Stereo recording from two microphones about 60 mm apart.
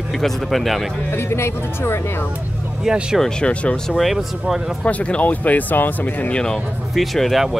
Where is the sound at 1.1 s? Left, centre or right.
Left.